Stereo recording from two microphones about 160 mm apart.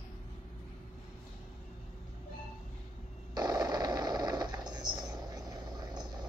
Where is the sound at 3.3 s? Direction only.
25° right (ahead or behind).